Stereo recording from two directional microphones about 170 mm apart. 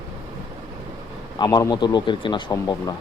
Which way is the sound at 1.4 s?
20° left (ahead or behind).